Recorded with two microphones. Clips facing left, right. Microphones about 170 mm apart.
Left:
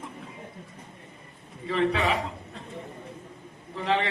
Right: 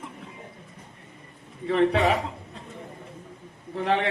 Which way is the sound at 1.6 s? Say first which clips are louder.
Right 4 dB; 60° right (ahead or behind).